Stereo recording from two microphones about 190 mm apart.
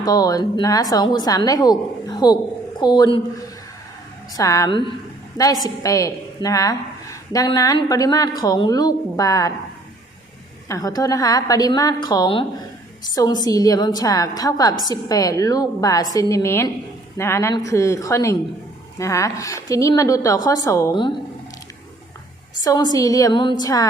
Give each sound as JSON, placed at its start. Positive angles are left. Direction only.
{"t": 0.0, "sound": "a woman's voice", "side_deg": 20}
{"t": 10.7, "sound": "a woman's voice", "side_deg": 20}
{"t": 22.6, "sound": "speech", "side_deg": 20}